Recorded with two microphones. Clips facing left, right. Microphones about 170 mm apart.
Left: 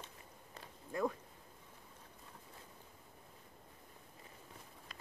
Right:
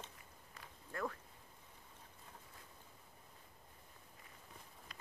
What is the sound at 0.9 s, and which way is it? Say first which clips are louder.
Speech: left 6 dB; 15° left (ahead or behind).